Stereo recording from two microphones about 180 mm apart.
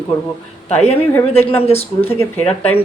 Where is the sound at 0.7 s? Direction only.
35° left (ahead or behind).